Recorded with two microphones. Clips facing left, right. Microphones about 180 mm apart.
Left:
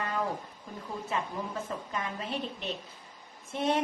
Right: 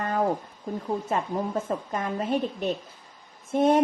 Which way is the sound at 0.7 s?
45° right (ahead or behind).